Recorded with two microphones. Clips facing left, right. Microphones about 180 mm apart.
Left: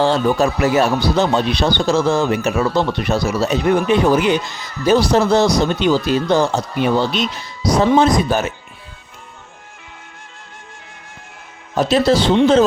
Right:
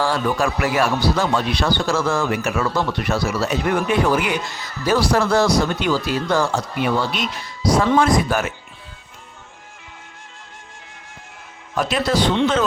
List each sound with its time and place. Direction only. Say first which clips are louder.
0.0 s speech: left 5 dB; 25° left (ahead or behind)
11.7 s speech: left 6 dB; 25° left (ahead or behind)